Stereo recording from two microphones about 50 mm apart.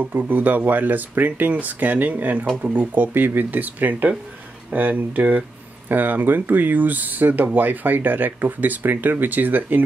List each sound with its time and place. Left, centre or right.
0.2 s speech: right